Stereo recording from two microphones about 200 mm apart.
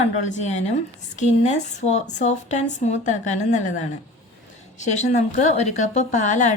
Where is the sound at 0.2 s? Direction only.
35° left (ahead or behind).